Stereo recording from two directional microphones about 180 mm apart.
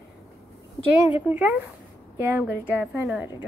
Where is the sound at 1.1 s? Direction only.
10° right (ahead or behind).